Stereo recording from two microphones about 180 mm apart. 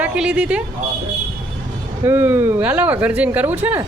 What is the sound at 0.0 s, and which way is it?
Speech, 5° right (ahead or behind).